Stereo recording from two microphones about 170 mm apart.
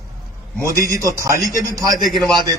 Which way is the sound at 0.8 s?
20° right (ahead or behind).